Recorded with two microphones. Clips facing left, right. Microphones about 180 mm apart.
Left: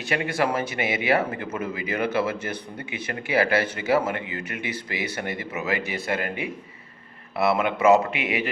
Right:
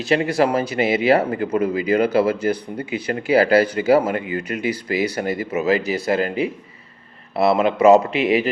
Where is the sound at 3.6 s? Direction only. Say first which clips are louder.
Right 8 dB; 25° left (ahead or behind).